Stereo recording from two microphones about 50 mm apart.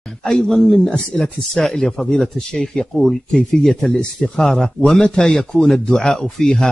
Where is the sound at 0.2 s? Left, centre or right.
Centre.